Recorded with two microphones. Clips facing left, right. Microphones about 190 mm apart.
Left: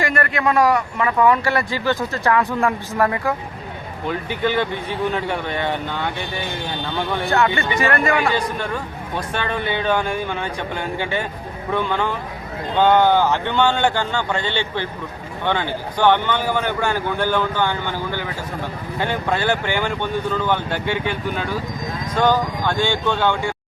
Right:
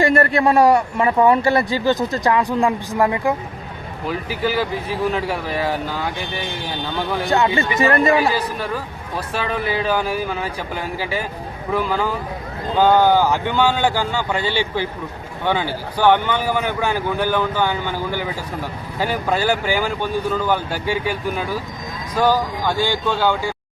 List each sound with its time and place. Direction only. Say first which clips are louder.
0.0 s a man's voice: right 5 dB; 30° right (ahead or behind)
1.8 s speech: right 3 dB; 15° right (ahead or behind)
4.4 s a man's voice: even; 5° right (ahead or behind)
7.3 s a man's voice: right 1 dB; 20° right (ahead or behind)
8.3 s a man's voice: even; 5° right (ahead or behind)